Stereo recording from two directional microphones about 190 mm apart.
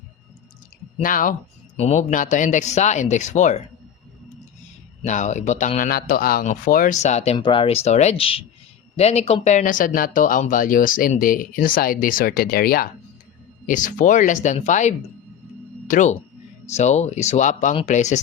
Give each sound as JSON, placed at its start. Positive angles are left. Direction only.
{"t": 1.0, "sound": "speech", "side_deg": 45}
{"t": 5.0, "sound": "speech", "side_deg": 40}
{"t": 7.3, "sound": "speech", "side_deg": 25}